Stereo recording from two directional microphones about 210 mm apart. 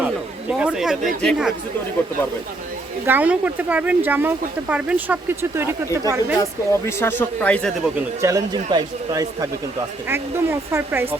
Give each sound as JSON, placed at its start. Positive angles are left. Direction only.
{"t": 0.6, "sound": "speech", "side_deg": -5}
{"t": 3.1, "sound": "speech", "side_deg": -10}
{"t": 6.4, "sound": "speech", "side_deg": 10}
{"t": 8.2, "sound": "speech", "side_deg": -15}